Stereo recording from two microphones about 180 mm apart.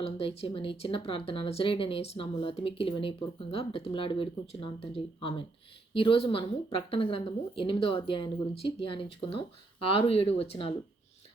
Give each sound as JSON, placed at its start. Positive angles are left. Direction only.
{"t": 0.0, "sound": "speech", "side_deg": 30}
{"t": 5.9, "sound": "a woman's voice", "side_deg": 30}